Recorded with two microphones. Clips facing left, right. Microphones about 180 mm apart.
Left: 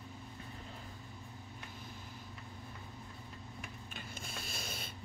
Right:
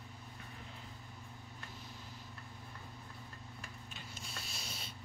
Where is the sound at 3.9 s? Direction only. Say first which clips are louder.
Left 3 dB; 55° left (ahead or behind).